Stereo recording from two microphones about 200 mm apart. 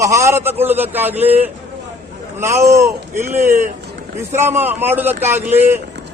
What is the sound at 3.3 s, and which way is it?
Speech, 40° right (ahead or behind).